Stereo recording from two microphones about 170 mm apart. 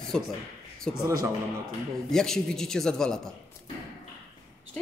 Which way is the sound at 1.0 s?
20° right (ahead or behind).